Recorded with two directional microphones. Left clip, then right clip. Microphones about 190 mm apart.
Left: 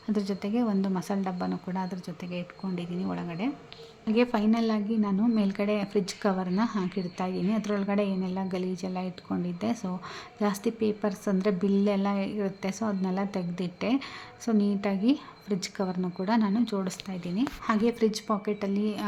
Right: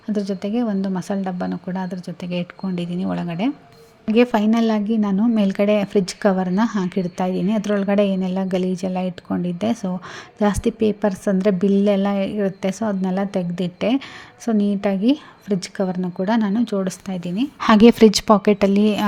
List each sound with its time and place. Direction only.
0.1 s a woman's voice: 15° right (ahead or behind)
17.6 s a woman's voice: 45° right (ahead or behind)